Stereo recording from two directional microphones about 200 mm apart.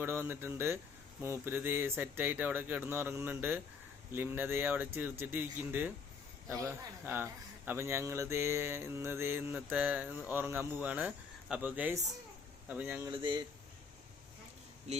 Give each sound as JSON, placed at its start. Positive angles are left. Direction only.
{"t": 0.0, "sound": "a man's voice", "side_deg": -10}
{"t": 13.1, "sound": "speech", "side_deg": -20}